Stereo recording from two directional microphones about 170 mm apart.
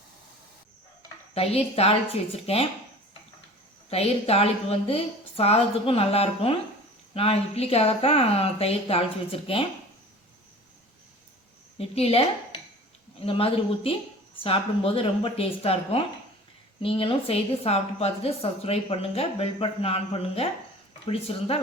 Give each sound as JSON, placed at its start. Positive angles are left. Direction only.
{"t": 1.3, "sound": "a woman's voice", "side_deg": 35}
{"t": 3.8, "sound": "a woman's voice", "side_deg": 35}
{"t": 11.8, "sound": "a woman's voice", "side_deg": 35}